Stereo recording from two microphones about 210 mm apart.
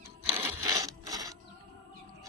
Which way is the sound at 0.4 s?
15° right (ahead or behind).